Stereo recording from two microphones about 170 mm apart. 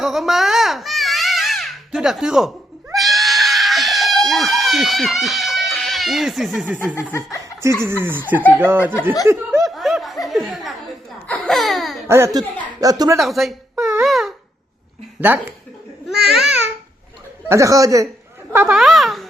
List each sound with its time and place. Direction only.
0.0 s baby cry: centre (ahead or behind)
2.9 s screaming: centre (ahead or behind)
6.7 s speech: 10° left (ahead or behind)
7.6 s speech: 15° right (ahead or behind)
9.6 s snicker: centre (ahead or behind)
10.4 s speech: 5° right (ahead or behind)
12.0 s speech: 15° right (ahead or behind)
13.1 s speech: centre (ahead or behind)
13.7 s a sound: 15° right (ahead or behind)
14.0 s a sound: centre (ahead or behind)
15.2 s speech: 10° right (ahead or behind)
16.2 s babbling: centre (ahead or behind)
17.5 s speech: 20° right (ahead or behind)
18.8 s a child's voice: centre (ahead or behind)